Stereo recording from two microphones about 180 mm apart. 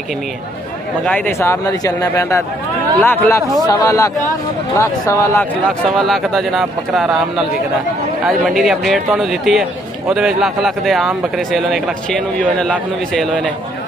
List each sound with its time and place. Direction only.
1.0 s a man's voice: 10° left (ahead or behind)
5.9 s a man's voice: centre (ahead or behind)